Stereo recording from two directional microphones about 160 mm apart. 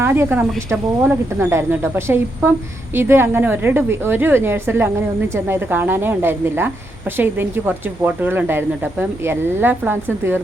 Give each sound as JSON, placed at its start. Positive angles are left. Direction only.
{"t": 0.0, "sound": "speech", "side_deg": -15}